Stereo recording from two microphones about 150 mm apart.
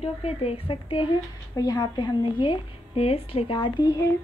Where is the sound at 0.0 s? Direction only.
45° left (ahead or behind).